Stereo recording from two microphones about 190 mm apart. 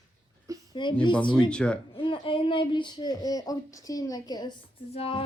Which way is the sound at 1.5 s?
5° left (ahead or behind).